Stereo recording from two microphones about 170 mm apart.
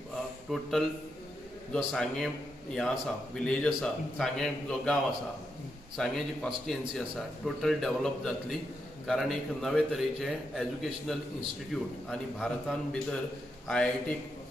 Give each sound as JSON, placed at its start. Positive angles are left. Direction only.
{"t": 0.5, "sound": "a man's voice", "side_deg": 0}
{"t": 5.9, "sound": "a man's voice", "side_deg": 5}